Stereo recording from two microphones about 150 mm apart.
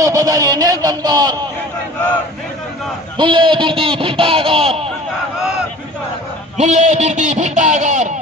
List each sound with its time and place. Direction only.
0.0 s speech: 20° right (ahead or behind)
3.2 s speech: 35° right (ahead or behind)
6.5 s a man's voice: 50° right (ahead or behind)